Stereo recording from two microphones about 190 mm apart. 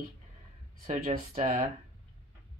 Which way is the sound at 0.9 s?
50° right (ahead or behind).